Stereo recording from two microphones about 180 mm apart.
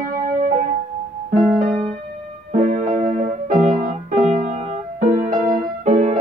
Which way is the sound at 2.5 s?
50° right (ahead or behind).